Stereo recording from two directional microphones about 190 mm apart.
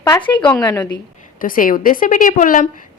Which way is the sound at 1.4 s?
45° left (ahead or behind).